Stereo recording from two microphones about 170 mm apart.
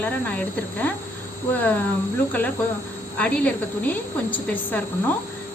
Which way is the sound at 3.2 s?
10° left (ahead or behind).